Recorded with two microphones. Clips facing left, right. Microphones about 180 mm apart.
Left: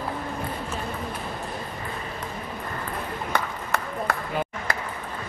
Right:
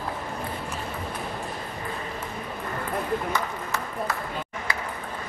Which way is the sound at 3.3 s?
60° left (ahead or behind).